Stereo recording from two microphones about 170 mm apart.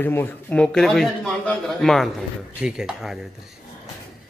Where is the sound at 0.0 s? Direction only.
15° left (ahead or behind); by 3.2 s 5° right (ahead or behind).